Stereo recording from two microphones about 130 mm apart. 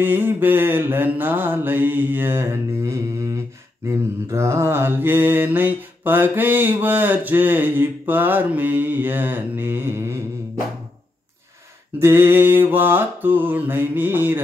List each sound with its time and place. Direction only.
0.0 s mantra: 15° right (ahead or behind)
12.0 s mantra: 20° right (ahead or behind)